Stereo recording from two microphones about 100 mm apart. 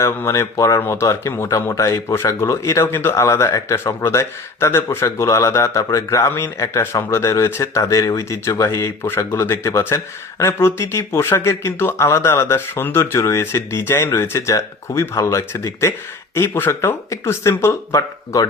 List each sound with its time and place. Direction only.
0.0 s speech: 25° left (ahead or behind)